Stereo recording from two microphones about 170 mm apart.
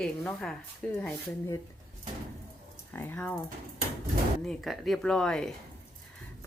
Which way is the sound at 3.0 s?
10° left (ahead or behind).